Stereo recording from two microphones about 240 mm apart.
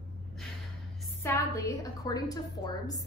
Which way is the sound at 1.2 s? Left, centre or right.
Centre.